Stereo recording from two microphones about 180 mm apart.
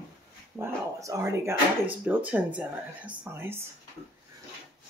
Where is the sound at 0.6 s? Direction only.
15° right (ahead or behind).